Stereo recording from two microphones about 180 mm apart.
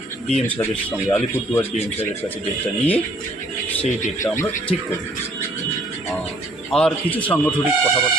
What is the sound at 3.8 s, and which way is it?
Speech, 45° left (ahead or behind).